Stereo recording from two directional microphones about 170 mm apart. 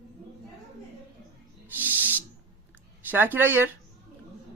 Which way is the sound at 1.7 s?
10° right (ahead or behind).